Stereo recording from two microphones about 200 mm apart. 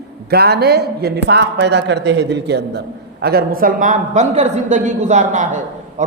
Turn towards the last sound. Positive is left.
turn(degrees=-40)  # may be behind; listen again after turning